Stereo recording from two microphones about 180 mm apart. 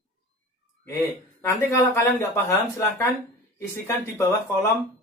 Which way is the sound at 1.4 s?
15° left (ahead or behind).